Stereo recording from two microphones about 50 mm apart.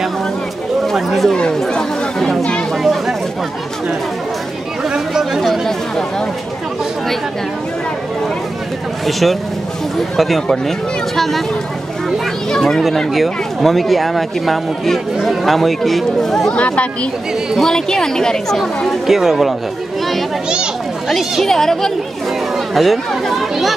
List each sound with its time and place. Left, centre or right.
0.9 s speech: centre
1.3 s speech: centre
2.8 s chatter: centre
4.9 s chatter: centre
9.0 s speech: centre
12.4 s a woman's voice: centre
16.5 s speech: left
17.6 s a woman's voice: centre
18.9 s speech: centre
21.1 s a woman's voice: centre